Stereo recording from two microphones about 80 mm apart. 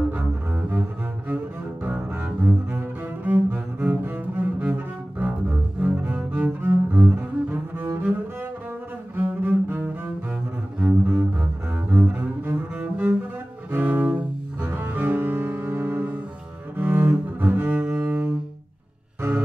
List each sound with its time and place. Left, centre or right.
0.1 s cello: right
5.8 s cello: right
9.1 s cello: right
10.8 s cello: centre
11.9 s double bass: right
16.7 s cello: right